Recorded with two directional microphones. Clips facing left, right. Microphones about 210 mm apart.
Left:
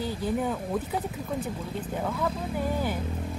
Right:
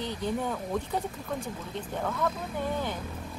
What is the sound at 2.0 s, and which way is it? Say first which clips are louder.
Speech: even; 10° left (ahead or behind).